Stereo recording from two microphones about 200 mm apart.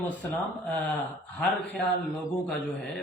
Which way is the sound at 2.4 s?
5° left (ahead or behind).